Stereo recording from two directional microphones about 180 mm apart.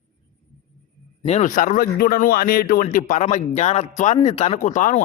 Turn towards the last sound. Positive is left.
turn(degrees=45)  # may be behind; listen again after turning